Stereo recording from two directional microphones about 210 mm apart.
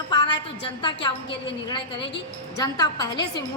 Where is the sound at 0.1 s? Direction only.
20° left (ahead or behind).